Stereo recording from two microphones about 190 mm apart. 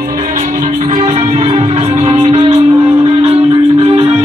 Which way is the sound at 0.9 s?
30° right (ahead or behind).